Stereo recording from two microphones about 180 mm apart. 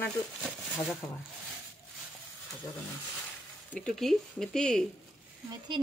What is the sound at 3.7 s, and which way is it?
Speech, 5° left (ahead or behind).